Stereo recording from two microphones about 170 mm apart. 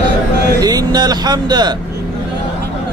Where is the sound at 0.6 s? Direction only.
25° right (ahead or behind).